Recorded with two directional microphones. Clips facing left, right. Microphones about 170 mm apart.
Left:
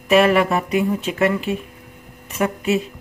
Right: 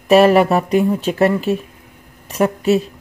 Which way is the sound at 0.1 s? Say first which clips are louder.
Right 4 dB; 35° right (ahead or behind).